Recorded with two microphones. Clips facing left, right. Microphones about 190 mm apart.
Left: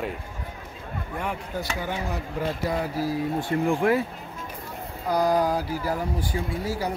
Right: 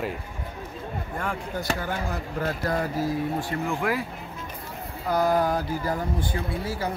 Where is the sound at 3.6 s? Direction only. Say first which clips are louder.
Left 7 dB; 30° left (ahead or behind).